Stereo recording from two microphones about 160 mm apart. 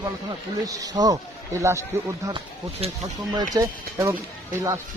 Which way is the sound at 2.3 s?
30° right (ahead or behind).